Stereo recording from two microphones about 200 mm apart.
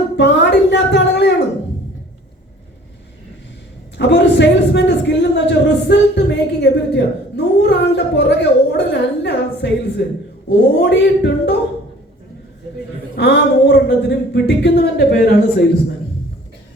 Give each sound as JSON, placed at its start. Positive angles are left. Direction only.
{"t": 0.2, "sound": "a sound", "side_deg": 60}
{"t": 3.9, "sound": "a man's voice", "side_deg": 60}
{"t": 13.1, "sound": "speech", "side_deg": 60}